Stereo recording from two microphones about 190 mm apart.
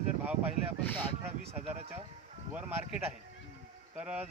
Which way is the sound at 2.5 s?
5° right (ahead or behind).